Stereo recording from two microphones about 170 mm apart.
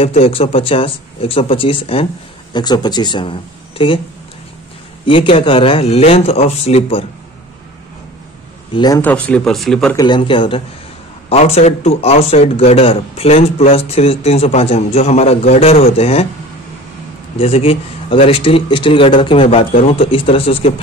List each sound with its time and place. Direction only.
0.0 s speech: 35° left (ahead or behind)
5.0 s speech: 30° left (ahead or behind)
8.7 s speech: 25° left (ahead or behind)
9.0 s speech: 5° left (ahead or behind)
9.9 s speech: 25° left (ahead or behind)
17.4 s speech: 35° left (ahead or behind)